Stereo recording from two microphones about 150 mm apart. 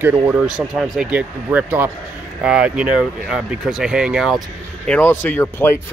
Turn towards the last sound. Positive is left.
turn(degrees=15)  # may be behind; listen again after turning